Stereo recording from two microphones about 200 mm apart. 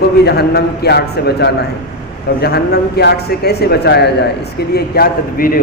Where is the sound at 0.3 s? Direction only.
55° left (ahead or behind).